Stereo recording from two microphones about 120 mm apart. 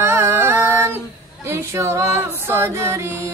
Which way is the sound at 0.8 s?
20° right (ahead or behind).